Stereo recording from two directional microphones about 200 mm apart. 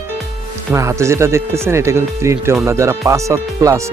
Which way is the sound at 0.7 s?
15° right (ahead or behind).